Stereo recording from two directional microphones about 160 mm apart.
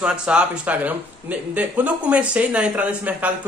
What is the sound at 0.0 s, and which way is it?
Speech, 5° right (ahead or behind).